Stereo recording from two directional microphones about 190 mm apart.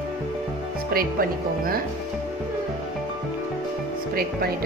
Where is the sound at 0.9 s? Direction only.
50° right (ahead or behind).